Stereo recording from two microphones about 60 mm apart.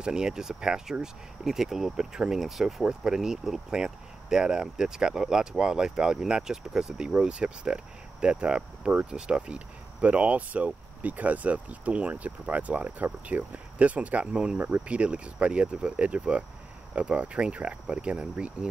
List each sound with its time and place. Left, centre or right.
0.0 s speech: centre
14.6 s speech: right